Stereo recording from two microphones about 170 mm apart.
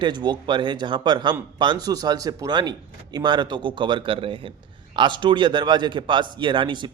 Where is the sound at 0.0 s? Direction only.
25° right (ahead or behind).